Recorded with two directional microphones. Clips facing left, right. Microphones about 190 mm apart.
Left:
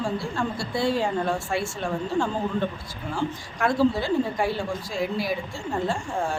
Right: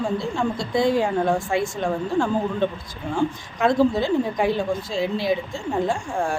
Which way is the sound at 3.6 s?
20° right (ahead or behind).